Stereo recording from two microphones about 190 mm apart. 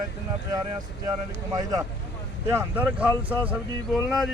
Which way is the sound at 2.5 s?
10° right (ahead or behind).